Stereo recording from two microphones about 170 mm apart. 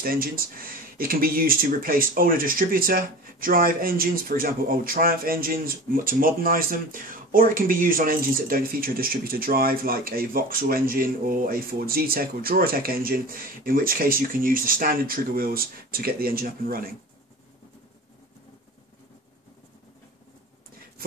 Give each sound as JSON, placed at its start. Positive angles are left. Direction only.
{"t": 0.0, "sound": "speech", "side_deg": -60}